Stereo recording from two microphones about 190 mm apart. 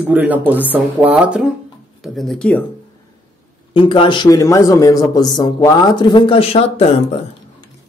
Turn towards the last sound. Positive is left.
turn(degrees=35)  # may be behind; listen again after turning